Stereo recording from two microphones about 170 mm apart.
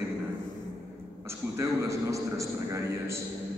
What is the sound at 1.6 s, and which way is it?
A man's voice, 20° right (ahead or behind).